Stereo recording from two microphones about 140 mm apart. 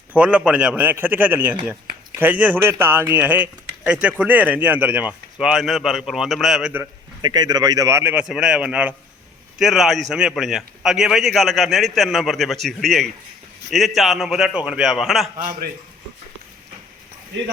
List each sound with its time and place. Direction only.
0.1 s speech: 10° right (ahead or behind)
7.2 s a man's voice: 30° right (ahead or behind); by 15.4 s centre (ahead or behind)
15.4 s a man's voice: 90° right